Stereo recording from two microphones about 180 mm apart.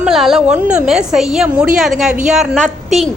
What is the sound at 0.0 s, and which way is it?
A woman's voice, centre (ahead or behind).